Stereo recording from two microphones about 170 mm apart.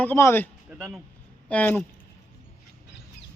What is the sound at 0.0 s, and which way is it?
Speech, 15° left (ahead or behind).